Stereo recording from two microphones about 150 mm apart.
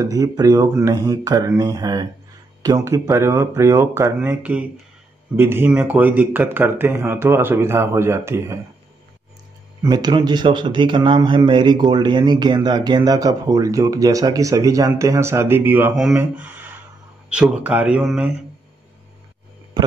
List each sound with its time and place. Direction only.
0.0 s speech: 25° right (ahead or behind)
9.8 s speech: 30° right (ahead or behind); by 18.3 s 5° right (ahead or behind)